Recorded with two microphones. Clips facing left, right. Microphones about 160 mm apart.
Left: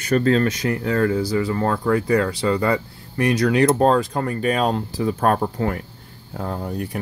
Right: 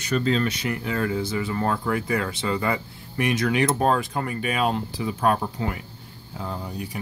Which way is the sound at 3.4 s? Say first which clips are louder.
Left 7 dB; 35° left (ahead or behind).